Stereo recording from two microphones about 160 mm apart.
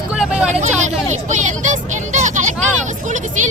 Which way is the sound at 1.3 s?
50° right (ahead or behind).